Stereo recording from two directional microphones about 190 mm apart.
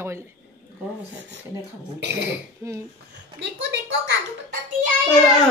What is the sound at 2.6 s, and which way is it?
Speech, 15° right (ahead or behind).